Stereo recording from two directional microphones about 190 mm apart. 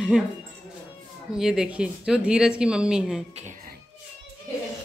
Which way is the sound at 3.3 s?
40° right (ahead or behind).